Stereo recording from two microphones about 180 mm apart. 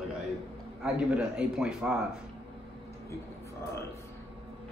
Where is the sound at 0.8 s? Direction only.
5° right (ahead or behind).